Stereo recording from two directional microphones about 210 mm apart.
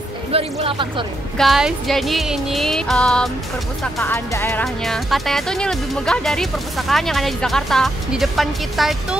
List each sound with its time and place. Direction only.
0.3 s speech: 30° right (ahead or behind)
1.4 s speech: centre (ahead or behind)
3.8 s music: 10° left (ahead or behind)
4.8 s speech: centre (ahead or behind)